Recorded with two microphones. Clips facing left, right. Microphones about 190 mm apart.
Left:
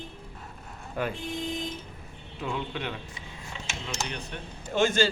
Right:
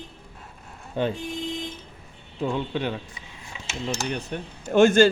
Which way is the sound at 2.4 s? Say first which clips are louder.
Right 6 dB; 35° right (ahead or behind).